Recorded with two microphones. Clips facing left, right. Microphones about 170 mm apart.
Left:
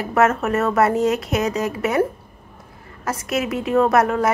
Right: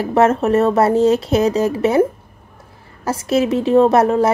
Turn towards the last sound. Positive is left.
turn(degrees=-30)  # may be behind; listen again after turning